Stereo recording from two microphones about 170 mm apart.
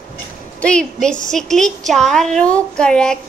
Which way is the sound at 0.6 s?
5° left (ahead or behind).